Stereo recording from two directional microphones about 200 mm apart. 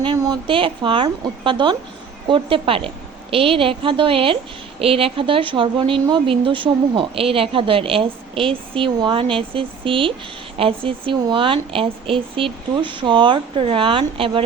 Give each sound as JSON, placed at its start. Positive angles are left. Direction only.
{"t": 0.0, "sound": "speech", "side_deg": -20}